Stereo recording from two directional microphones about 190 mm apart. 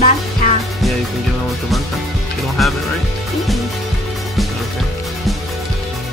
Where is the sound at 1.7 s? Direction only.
Centre (ahead or behind).